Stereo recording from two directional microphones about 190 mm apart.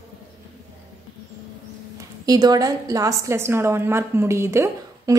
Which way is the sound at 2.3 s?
20° right (ahead or behind).